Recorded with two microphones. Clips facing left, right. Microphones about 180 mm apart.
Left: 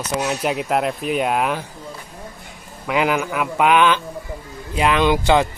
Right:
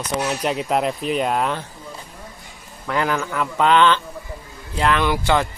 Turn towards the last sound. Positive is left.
turn(degrees=20)  # may be behind; listen again after turning